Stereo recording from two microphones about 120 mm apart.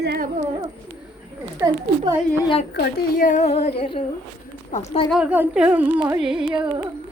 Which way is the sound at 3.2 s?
80° left.